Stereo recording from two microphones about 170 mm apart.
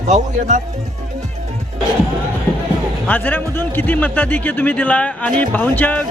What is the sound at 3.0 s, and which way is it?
A man's voice, 10° left (ahead or behind).